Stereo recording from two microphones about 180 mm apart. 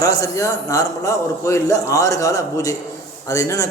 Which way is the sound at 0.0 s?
20° left (ahead or behind).